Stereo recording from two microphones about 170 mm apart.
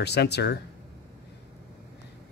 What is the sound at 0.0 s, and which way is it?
Speech, 80° left.